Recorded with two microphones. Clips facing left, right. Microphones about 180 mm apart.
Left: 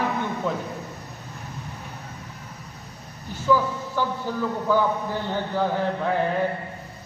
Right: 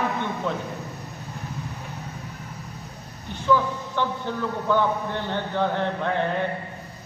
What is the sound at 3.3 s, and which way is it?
A man's voice, 5° left (ahead or behind).